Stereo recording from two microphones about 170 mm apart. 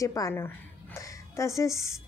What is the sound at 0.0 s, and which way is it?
A woman's voice, 20° left (ahead or behind).